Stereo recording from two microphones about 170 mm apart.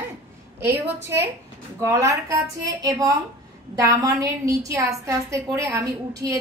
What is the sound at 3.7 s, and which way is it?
A woman's voice, 20° right (ahead or behind).